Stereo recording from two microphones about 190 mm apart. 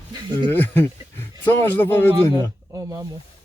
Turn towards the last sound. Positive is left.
turn(degrees=-20)  # may be behind; listen again after turning